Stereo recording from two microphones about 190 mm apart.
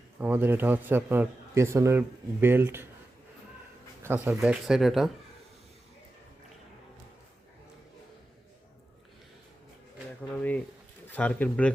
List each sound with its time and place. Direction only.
0.2 s a man's voice: 10° right (ahead or behind)
4.0 s speech: 10° right (ahead or behind)
10.3 s a sound: 10° left (ahead or behind)
11.1 s speech: 10° left (ahead or behind)